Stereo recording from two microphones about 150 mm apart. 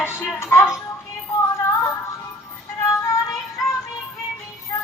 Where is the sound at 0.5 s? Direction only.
20° left (ahead or behind).